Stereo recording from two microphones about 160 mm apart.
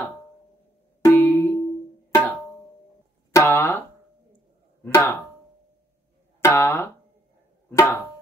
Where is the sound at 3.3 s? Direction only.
15° left (ahead or behind).